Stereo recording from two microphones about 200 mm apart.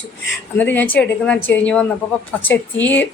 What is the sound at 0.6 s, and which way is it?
A woman's voice, 10° left (ahead or behind).